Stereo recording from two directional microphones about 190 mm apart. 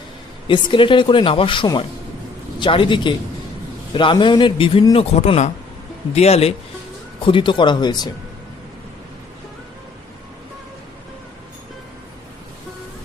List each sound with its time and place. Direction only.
0.4 s speech: 25° left (ahead or behind)